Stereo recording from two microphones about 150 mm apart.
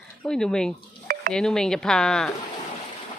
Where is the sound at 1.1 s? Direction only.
90° right.